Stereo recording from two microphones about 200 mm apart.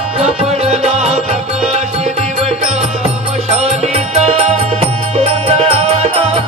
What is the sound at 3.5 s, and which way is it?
Music, 30° right (ahead or behind).